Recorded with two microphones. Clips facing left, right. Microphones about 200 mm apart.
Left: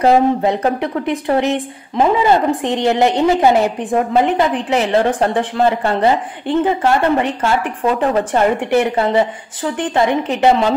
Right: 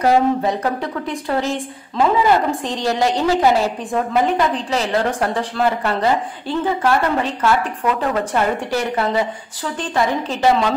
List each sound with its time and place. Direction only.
0.0 s a woman's voice: 25° left (ahead or behind)